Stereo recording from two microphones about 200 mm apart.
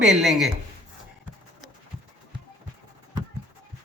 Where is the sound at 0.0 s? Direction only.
Centre (ahead or behind).